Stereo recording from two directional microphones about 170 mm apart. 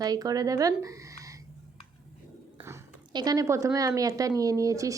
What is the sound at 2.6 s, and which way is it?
A woman's voice, 20° right (ahead or behind).